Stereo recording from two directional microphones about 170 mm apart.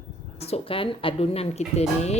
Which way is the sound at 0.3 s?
35° left (ahead or behind).